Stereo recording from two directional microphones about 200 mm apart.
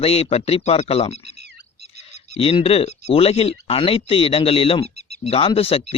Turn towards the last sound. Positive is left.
turn(degrees=30)  # may be behind; listen again after turning